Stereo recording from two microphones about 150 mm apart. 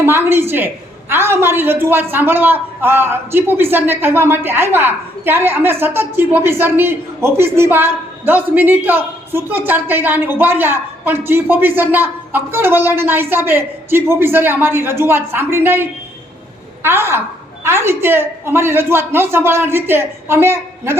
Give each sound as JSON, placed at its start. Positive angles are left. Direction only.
{"t": 0.0, "sound": "a man's voice", "side_deg": -15}